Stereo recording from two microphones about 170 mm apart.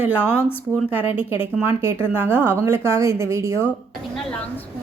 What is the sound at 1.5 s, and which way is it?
A woman's voice, 15° right (ahead or behind).